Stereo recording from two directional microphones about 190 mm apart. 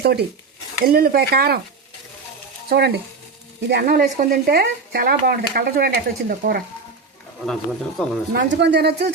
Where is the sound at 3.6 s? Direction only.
60° right (ahead or behind).